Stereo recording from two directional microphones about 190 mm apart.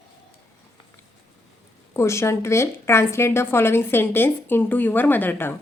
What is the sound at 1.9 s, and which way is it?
A woman's voice, 15° left (ahead or behind).